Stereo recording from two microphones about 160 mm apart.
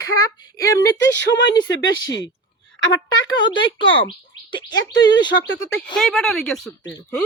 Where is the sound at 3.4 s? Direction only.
30° left (ahead or behind).